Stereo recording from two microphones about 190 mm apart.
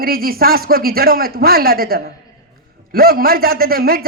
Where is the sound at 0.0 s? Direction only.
50° right (ahead or behind).